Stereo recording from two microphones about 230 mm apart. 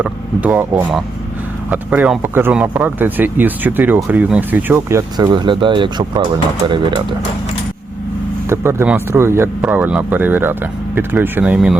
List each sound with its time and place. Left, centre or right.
0.0 s speech: centre
8.4 s speech: centre